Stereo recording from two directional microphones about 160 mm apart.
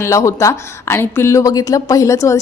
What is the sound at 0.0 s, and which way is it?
Speech, 20° left (ahead or behind).